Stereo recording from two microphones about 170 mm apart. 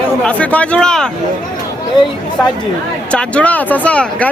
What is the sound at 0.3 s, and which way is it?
Speech, 5° left (ahead or behind).